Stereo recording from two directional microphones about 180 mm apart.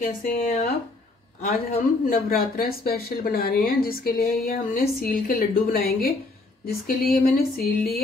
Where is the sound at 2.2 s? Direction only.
55° left (ahead or behind).